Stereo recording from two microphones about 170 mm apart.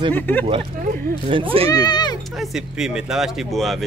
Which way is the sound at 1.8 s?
25° left (ahead or behind).